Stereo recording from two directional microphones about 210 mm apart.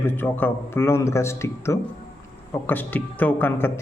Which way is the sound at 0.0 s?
10° left (ahead or behind).